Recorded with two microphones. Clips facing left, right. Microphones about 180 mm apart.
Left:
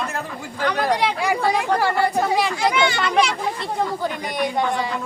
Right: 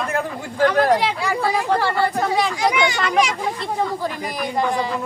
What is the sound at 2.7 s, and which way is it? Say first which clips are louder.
Speech: even; 15° right (ahead or behind).